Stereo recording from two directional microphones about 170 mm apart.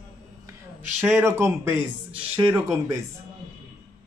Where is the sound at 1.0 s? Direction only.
15° right (ahead or behind).